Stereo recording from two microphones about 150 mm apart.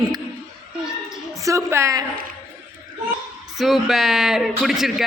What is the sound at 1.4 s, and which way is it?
Speech, 20° right (ahead or behind).